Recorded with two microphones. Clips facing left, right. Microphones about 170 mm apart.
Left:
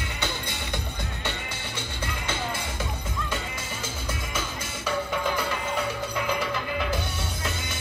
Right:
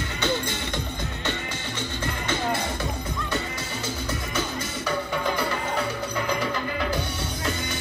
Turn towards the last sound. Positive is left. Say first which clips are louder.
# right 2 dB
turn(degrees=5)  # may be behind; listen again after turning